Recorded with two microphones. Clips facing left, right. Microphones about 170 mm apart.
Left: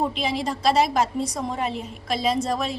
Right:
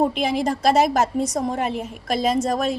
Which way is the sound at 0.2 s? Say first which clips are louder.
Right 4 dB; 55° right (ahead or behind).